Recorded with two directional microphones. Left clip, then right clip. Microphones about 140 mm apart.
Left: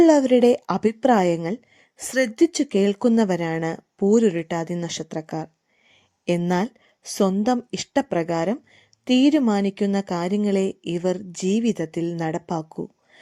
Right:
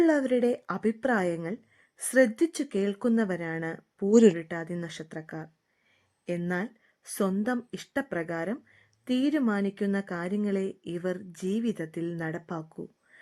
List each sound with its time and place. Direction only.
0.0 s speech: 25° left (ahead or behind)
4.1 s speech: centre (ahead or behind)
4.4 s speech: 30° left (ahead or behind)